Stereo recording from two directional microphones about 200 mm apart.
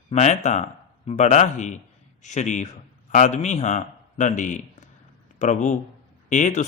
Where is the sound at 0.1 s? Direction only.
35° left (ahead or behind).